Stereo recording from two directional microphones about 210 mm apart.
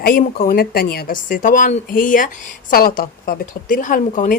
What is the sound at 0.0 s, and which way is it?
Speech, 40° left (ahead or behind).